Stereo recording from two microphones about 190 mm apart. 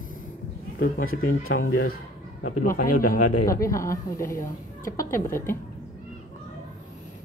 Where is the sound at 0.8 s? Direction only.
50° left (ahead or behind).